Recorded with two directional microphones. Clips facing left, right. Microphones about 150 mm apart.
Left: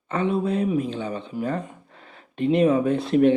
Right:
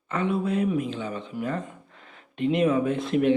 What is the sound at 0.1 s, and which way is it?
Speech, 30° left (ahead or behind).